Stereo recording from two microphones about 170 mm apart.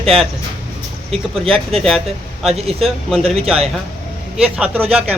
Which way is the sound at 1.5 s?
Centre (ahead or behind).